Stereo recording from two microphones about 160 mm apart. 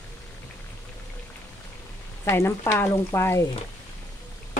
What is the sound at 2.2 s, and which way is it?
Speech, 15° left (ahead or behind).